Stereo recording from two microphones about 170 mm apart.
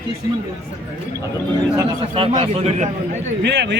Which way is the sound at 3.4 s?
85° right.